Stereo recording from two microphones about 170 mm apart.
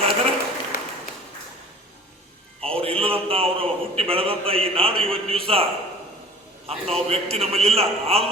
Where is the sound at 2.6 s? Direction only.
35° right (ahead or behind).